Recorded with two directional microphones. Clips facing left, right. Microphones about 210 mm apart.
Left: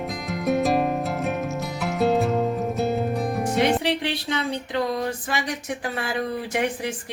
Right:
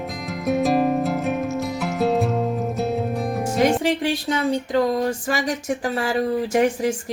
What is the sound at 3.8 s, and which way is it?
Speech, 45° right (ahead or behind).